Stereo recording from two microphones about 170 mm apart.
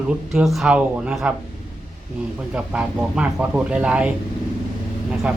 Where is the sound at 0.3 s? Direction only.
Centre (ahead or behind).